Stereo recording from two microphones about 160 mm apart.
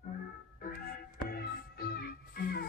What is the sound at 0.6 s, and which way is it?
Music, 65° left (ahead or behind).